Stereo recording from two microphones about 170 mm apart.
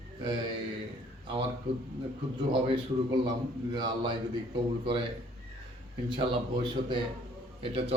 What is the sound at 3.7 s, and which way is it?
Speech, 25° right (ahead or behind).